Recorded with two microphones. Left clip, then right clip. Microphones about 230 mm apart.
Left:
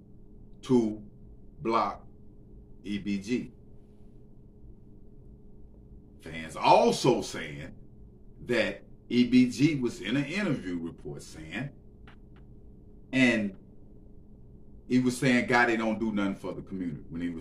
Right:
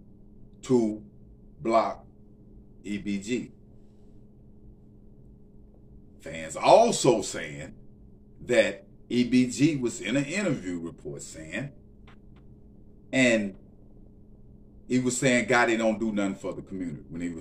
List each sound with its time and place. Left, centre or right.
0.6 s a sound: centre
1.6 s speech: centre
6.5 s a man's voice: centre
13.1 s a man's voice: centre
14.9 s speech: centre